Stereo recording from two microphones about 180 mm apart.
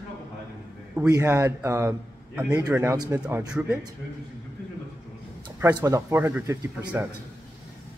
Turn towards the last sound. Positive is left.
turn(degrees=-15)  # may be behind; listen again after turning